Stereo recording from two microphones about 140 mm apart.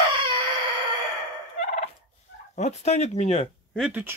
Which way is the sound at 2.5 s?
50° left (ahead or behind).